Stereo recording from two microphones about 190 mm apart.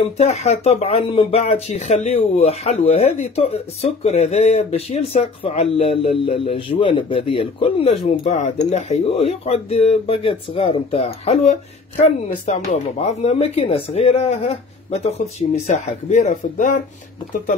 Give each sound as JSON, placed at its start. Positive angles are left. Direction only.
{"t": 0.2, "sound": "speech", "side_deg": 35}